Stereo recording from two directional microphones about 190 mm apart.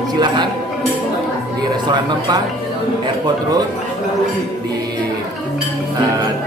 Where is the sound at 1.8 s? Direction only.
25° right (ahead or behind).